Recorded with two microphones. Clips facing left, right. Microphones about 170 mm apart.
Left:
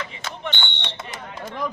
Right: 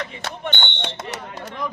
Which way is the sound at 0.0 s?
60° right (ahead or behind).